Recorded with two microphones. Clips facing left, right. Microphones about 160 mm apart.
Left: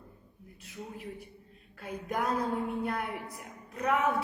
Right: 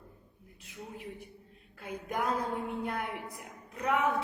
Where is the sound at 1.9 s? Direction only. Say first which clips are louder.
Left 1 dB; 15° right (ahead or behind).